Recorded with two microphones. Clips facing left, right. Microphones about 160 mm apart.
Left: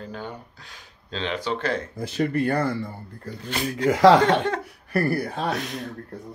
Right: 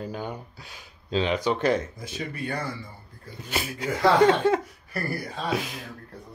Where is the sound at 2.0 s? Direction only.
60° left (ahead or behind).